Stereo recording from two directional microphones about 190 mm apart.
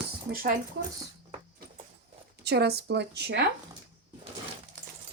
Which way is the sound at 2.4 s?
60° right (ahead or behind).